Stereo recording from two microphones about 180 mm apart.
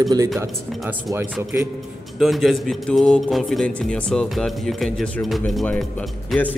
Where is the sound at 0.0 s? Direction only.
20° right (ahead or behind).